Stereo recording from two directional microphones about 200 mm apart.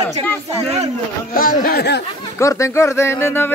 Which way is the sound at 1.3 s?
45° left (ahead or behind).